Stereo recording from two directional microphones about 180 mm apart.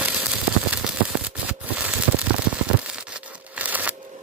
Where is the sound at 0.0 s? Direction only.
5° right (ahead or behind).